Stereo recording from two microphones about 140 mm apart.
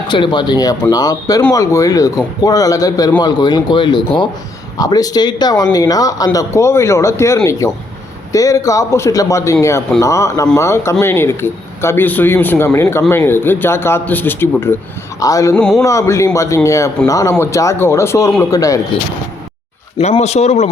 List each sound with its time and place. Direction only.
0.1 s speech: 35° left (ahead or behind)
15.5 s speech: 5° left (ahead or behind)
15.8 s speech: 20° left (ahead or behind)
20.0 s a man's voice: 50° left (ahead or behind)